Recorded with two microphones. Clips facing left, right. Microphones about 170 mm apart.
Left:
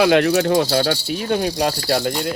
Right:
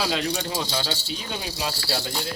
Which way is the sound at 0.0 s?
65° left (ahead or behind).